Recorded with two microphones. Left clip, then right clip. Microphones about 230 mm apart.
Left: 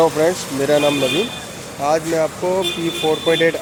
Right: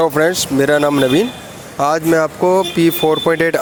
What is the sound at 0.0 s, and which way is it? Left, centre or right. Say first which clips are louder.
Speech: right 2 dB; right.